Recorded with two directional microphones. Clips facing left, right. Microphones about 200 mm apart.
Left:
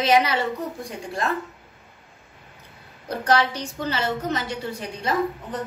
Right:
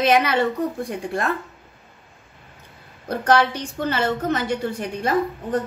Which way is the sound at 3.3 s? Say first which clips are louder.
Right 3 dB; 55° right (ahead or behind).